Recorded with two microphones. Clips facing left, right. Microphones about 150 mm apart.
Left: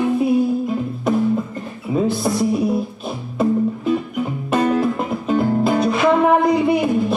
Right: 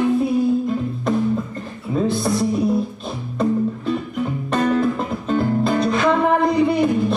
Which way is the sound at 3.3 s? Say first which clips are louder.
Left 2 dB; 5° left (ahead or behind).